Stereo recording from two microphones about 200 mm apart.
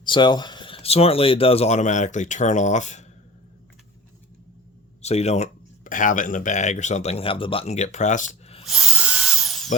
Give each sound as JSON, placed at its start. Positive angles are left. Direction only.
{"t": 0.0, "sound": "speech", "side_deg": 25}
{"t": 5.0, "sound": "speech", "side_deg": 30}
{"t": 8.6, "sound": "drill", "side_deg": 0}